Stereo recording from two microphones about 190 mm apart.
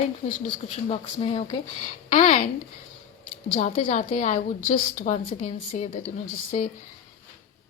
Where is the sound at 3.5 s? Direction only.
40° left (ahead or behind).